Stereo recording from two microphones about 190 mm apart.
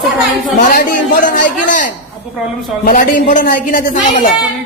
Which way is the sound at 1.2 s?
45° left (ahead or behind).